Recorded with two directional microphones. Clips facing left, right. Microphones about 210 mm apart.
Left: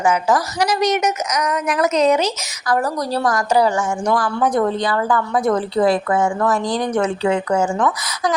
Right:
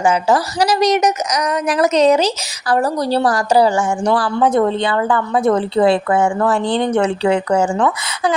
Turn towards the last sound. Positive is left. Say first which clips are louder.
# right 2 dB
turn(degrees=-30)  # may be behind; listen again after turning